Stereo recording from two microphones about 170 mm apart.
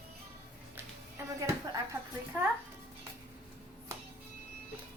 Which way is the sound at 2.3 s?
10° right (ahead or behind).